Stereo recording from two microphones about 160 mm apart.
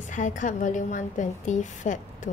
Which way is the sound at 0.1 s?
50° left (ahead or behind).